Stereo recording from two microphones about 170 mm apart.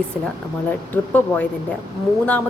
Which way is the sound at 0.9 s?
10° left (ahead or behind).